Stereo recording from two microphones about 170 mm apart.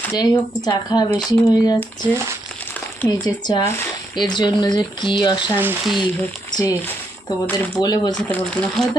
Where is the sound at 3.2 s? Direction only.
25° left (ahead or behind).